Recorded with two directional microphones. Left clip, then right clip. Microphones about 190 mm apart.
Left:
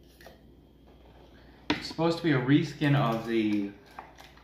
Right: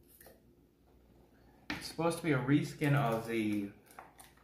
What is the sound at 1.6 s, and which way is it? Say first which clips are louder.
Speech: left 7 dB; centre (ahead or behind).